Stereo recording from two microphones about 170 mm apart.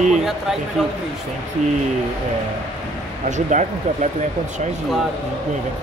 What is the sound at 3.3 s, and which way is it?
Speech, 45° right (ahead or behind).